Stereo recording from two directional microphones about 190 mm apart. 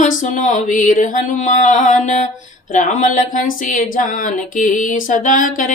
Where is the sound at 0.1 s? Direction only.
40° left (ahead or behind).